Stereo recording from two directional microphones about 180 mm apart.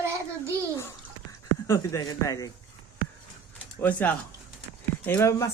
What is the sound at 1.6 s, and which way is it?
Speech, 15° left (ahead or behind).